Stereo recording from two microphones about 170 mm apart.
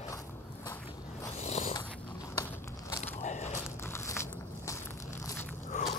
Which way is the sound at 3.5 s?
15° left (ahead or behind).